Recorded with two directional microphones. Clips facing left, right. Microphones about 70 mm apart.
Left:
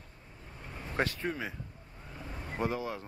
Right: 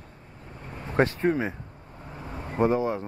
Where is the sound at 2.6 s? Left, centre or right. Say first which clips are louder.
Right 10 dB; right.